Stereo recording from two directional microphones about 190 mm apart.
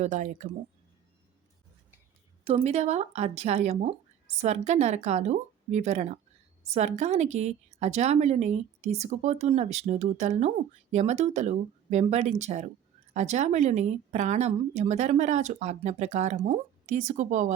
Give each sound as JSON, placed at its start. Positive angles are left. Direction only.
{"t": 0.0, "sound": "a woman's voice", "side_deg": -40}
{"t": 2.4, "sound": "a woman's voice", "side_deg": -30}